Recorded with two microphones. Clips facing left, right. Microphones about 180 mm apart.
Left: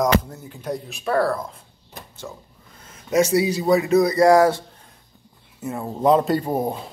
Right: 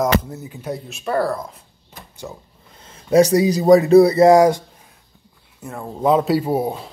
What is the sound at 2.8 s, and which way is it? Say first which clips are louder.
Speech: right 6 dB; 30° right (ahead or behind).